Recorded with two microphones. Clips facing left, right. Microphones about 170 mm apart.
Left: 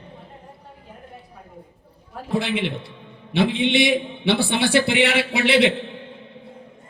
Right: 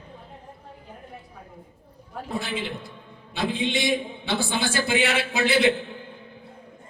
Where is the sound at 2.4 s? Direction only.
70° left (ahead or behind).